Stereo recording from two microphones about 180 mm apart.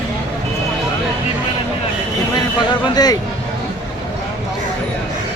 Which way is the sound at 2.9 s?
20° left (ahead or behind).